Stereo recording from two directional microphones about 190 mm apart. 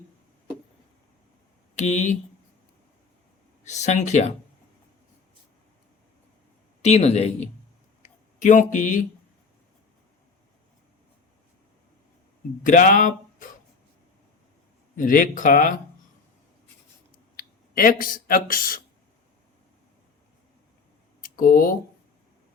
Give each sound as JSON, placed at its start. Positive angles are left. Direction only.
{"t": 1.7, "sound": "speech", "side_deg": 35}
{"t": 3.6, "sound": "speech", "side_deg": 35}
{"t": 6.8, "sound": "speech", "side_deg": 35}
{"t": 8.0, "sound": "a sound", "side_deg": 40}
{"t": 12.6, "sound": "speech", "side_deg": 45}
{"t": 14.9, "sound": "speech", "side_deg": 45}
{"t": 17.3, "sound": "speech", "side_deg": 50}
{"t": 21.2, "sound": "speech", "side_deg": 50}